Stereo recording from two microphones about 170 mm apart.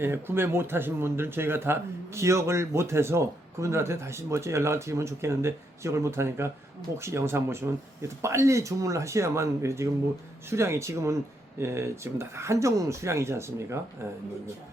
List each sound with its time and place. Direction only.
0.0 s speech: 15° right (ahead or behind)